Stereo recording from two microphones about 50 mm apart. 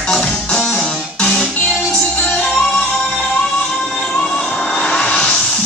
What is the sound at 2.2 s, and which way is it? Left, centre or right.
Music, centre.